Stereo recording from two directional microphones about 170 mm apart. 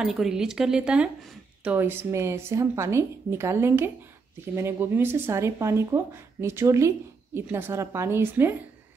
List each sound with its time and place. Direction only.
0.0 s speech: 5° right (ahead or behind)